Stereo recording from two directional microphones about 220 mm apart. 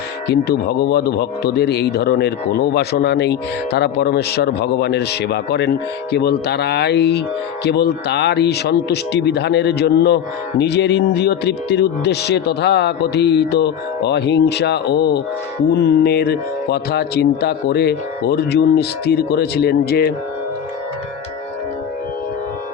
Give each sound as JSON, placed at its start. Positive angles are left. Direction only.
{"t": 0.3, "sound": "speech", "side_deg": 45}